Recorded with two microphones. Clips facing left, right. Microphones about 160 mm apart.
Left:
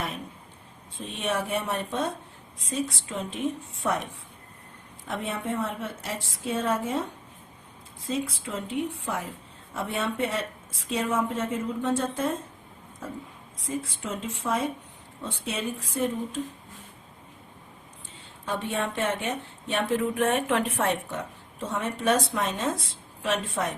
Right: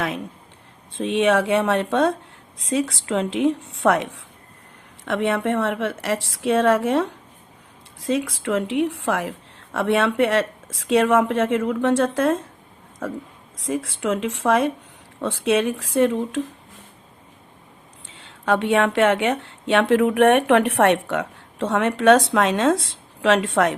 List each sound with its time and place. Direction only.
0.9 s a woman's voice: 85° right
13.6 s a woman's voice: 85° right
18.1 s a woman's voice: 90° right